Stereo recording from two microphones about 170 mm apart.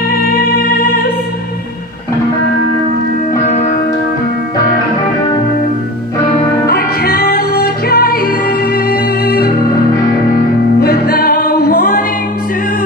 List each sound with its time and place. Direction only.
6.7 s music: 70° left (ahead or behind)
10.8 s music: 65° left (ahead or behind)